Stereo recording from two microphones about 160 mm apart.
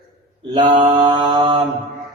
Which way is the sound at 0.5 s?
30° right (ahead or behind).